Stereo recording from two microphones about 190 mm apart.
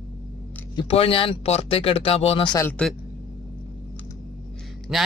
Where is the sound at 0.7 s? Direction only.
30° left (ahead or behind).